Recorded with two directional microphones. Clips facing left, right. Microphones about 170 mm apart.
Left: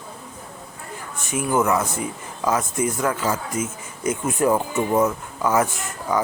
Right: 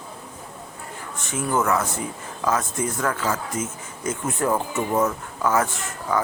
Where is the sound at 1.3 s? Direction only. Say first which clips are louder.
Left 2 dB; 15° left (ahead or behind).